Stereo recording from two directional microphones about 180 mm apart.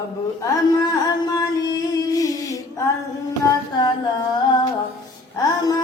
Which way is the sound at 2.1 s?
20° left (ahead or behind).